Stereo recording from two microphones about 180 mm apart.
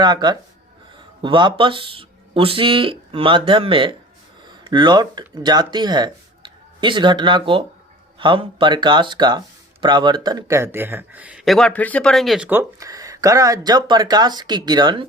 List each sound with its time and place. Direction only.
0.0 s speech: 25° right (ahead or behind); by 12.5 s centre (ahead or behind)
12.5 s speech: 15° right (ahead or behind)